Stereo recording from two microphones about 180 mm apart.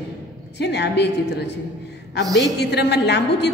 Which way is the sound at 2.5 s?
65° left (ahead or behind).